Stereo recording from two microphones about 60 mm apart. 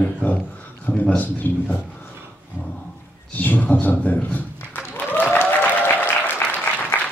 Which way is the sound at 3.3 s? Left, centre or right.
Left.